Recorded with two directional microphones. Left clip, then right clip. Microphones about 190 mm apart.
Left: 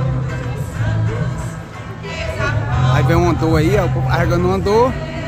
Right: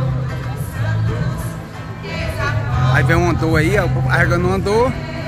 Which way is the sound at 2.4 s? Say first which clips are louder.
Left 1 dB; 10° left (ahead or behind).